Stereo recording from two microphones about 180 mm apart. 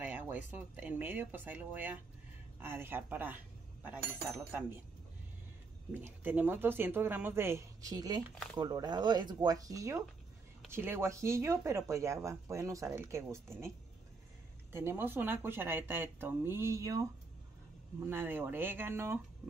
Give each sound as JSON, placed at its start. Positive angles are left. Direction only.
{"t": 0.0, "sound": "speech", "side_deg": -10}
{"t": 5.9, "sound": "speech", "side_deg": -10}
{"t": 14.7, "sound": "speech", "side_deg": -10}